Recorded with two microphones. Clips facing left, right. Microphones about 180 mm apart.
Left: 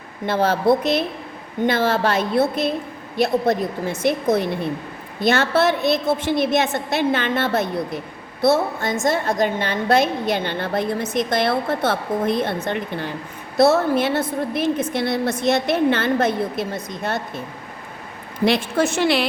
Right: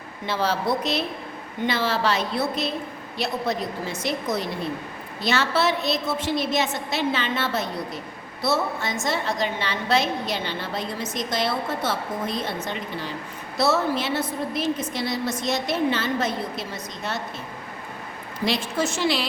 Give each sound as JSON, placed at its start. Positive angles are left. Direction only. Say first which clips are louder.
{"t": 0.3, "sound": "a woman's voice", "louder": "left 7 dB", "side_deg": 55}
{"t": 18.4, "sound": "a woman's voice", "louder": "left 6 dB", "side_deg": 60}